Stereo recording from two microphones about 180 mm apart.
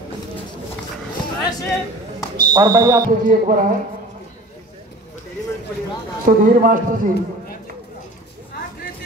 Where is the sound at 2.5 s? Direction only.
25° right (ahead or behind).